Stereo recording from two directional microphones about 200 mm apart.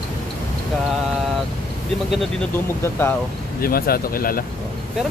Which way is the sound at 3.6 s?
45° left (ahead or behind).